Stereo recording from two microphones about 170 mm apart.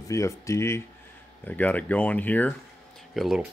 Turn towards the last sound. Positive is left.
turn(degrees=0)  # may be behind; listen again after turning